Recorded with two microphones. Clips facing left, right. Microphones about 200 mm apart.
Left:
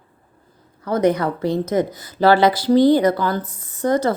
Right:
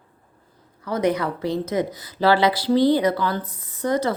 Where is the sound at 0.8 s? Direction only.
45° left (ahead or behind).